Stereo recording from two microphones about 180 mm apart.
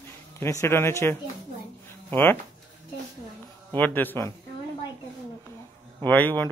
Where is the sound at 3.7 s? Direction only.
10° left (ahead or behind).